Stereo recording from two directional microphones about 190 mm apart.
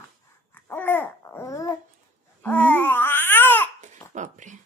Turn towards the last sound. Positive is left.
turn(degrees=-40)  # may be behind; listen again after turning